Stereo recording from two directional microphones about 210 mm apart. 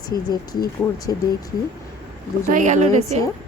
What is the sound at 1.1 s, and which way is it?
Speech, 15° left (ahead or behind).